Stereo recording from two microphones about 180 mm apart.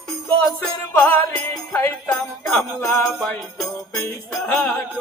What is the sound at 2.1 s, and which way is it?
Jingle bell, 5° left (ahead or behind).